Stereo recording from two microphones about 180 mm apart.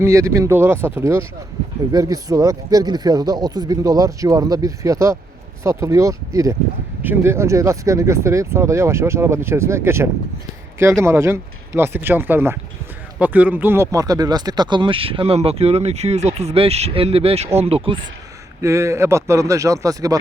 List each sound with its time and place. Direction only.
0.0 s speech: 15° right (ahead or behind); by 18.0 s 30° right (ahead or behind)
18.6 s speech: 15° right (ahead or behind)